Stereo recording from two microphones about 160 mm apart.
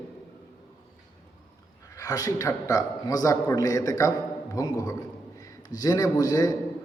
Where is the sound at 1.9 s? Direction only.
20° left (ahead or behind).